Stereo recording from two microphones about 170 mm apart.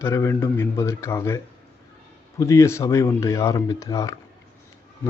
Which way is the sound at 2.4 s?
15° left (ahead or behind).